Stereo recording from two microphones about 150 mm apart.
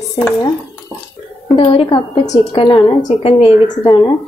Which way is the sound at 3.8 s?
30° left (ahead or behind).